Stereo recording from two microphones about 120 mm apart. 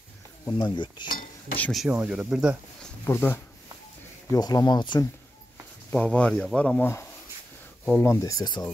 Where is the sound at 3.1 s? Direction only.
15° left (ahead or behind).